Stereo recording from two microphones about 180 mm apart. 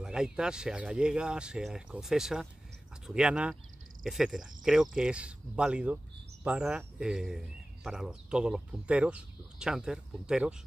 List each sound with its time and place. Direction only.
0.0 s speech: 5° right (ahead or behind)